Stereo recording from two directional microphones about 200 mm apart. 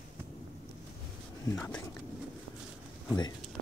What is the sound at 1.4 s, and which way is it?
Speech, 15° left (ahead or behind).